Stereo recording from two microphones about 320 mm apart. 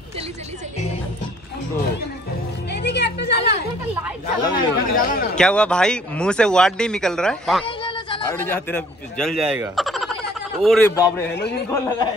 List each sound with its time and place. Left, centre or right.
2.7 s music: left
4.4 s speech: centre
4.9 s speech: left
5.4 s speech: centre
7.6 s a sound: centre
8.3 s speech: centre
11.3 s a man's voice: left
11.7 s speech: centre